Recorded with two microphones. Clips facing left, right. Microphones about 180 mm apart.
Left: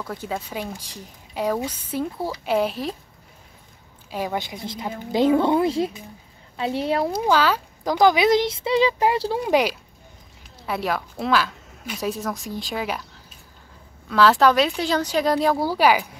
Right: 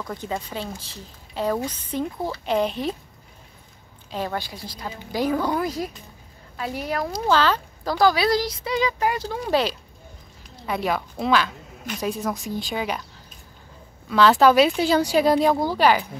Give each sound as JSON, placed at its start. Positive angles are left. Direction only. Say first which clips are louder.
{"t": 0.0, "sound": "speech", "louder": "even", "side_deg": 5}
{"t": 4.1, "sound": "a woman's voice", "louder": "left 1 dB", "side_deg": 10}
{"t": 7.2, "sound": "a woman's voice", "louder": "right 3 dB", "side_deg": 10}
{"t": 9.4, "sound": "speech", "louder": "left 1 dB", "side_deg": 15}
{"t": 10.7, "sound": "a woman's voice", "louder": "right 1 dB", "side_deg": 0}
{"t": 14.0, "sound": "a woman's voice", "louder": "right 1 dB", "side_deg": 0}